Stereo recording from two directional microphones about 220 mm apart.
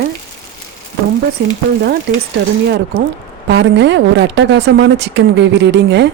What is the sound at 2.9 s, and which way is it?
A woman's voice, 50° right (ahead or behind).